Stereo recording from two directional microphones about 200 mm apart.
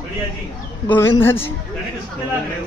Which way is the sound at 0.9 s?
10° left (ahead or behind).